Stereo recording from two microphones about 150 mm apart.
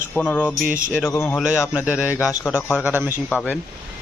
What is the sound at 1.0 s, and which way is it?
Speech, 15° left (ahead or behind).